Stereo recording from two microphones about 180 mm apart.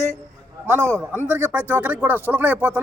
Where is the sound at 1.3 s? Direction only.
10° right (ahead or behind).